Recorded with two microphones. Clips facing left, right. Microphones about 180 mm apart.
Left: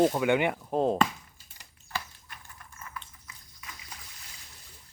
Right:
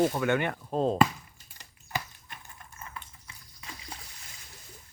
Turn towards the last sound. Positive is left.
turn(degrees=-30)  # may be behind; listen again after turning